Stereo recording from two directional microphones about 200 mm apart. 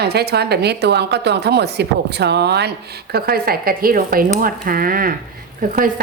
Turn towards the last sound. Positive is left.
turn(degrees=-45)  # may be behind; listen again after turning